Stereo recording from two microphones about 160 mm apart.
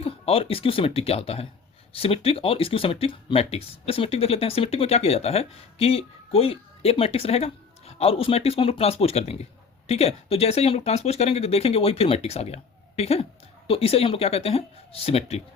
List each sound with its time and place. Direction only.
0.0 s speech: 35° left (ahead or behind)